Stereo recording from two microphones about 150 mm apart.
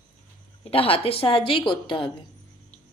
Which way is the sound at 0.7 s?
40° left (ahead or behind).